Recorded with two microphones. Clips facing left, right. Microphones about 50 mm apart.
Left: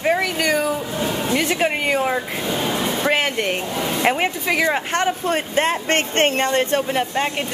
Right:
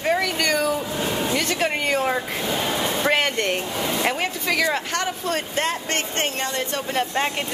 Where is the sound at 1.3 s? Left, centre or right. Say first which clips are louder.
Left 3 dB; centre.